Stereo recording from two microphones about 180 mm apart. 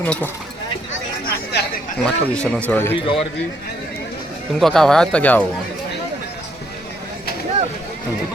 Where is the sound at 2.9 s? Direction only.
30° left (ahead or behind).